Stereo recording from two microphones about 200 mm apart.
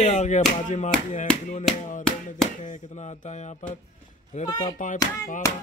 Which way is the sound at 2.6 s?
35° left (ahead or behind).